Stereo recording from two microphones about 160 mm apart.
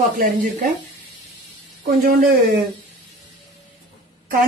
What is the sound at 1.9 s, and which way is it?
Speech, 55° right (ahead or behind).